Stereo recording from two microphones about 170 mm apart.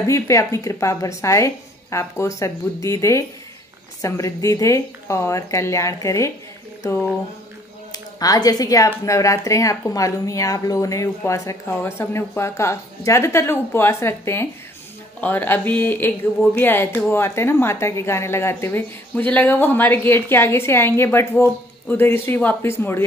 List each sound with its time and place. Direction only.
0.0 s speech: 15° left (ahead or behind)
7.9 s speech: 20° left (ahead or behind)